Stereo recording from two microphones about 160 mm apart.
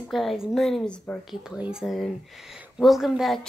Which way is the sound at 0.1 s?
Centre (ahead or behind).